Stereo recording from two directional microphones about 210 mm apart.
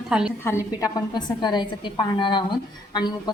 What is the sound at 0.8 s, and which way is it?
A woman's voice, 20° left (ahead or behind).